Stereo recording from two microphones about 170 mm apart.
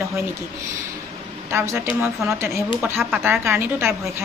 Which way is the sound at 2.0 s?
15° right (ahead or behind).